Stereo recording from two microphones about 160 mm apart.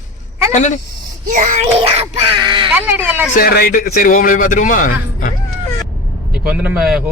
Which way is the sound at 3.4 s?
70° left (ahead or behind).